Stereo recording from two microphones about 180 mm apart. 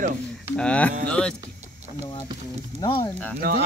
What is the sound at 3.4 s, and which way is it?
Speech, 60° right (ahead or behind).